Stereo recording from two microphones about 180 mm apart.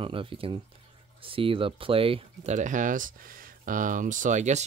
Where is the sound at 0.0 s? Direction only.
30° right (ahead or behind).